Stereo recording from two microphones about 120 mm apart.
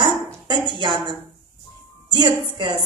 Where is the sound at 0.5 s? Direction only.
40° right (ahead or behind).